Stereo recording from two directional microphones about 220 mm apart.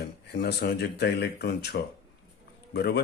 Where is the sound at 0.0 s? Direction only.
50° left (ahead or behind).